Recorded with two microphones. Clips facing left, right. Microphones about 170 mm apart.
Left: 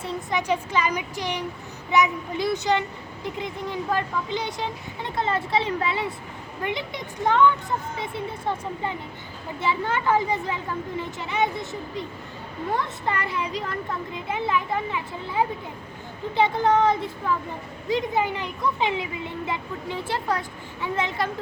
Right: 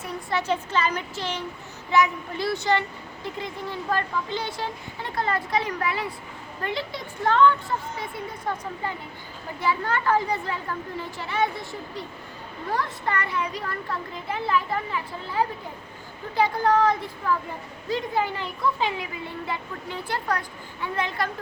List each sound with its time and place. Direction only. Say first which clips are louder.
0.0 s speech: left 1 dB; 20° left (ahead or behind)